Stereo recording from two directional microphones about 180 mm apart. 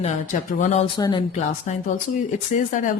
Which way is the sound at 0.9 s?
25° left (ahead or behind).